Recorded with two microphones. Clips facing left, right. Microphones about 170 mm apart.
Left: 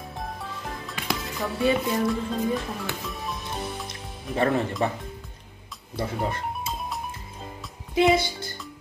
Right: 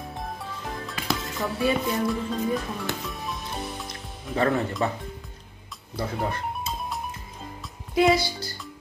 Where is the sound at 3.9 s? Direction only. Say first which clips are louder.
Left 1 dB; 25° left (ahead or behind).